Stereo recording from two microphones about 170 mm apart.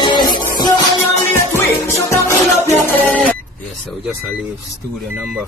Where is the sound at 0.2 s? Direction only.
55° left (ahead or behind).